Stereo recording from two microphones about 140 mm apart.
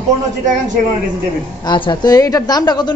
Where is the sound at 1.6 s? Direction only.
30° left (ahead or behind).